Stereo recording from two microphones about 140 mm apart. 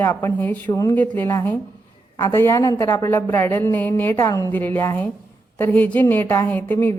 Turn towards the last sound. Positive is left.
turn(degrees=15)  # may be behind; listen again after turning